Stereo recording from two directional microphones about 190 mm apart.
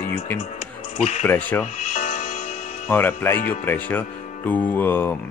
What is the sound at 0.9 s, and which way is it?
Speech, 40° left (ahead or behind).